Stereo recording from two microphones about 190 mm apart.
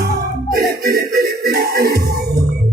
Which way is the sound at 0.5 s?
50° right (ahead or behind).